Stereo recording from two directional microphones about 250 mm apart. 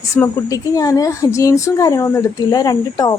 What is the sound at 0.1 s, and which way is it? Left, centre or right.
Speech, centre.